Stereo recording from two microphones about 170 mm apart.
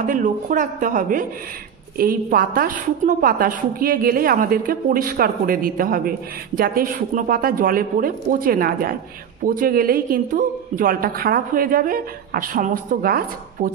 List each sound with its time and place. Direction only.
0.0 s a woman's voice: 50° right (ahead or behind)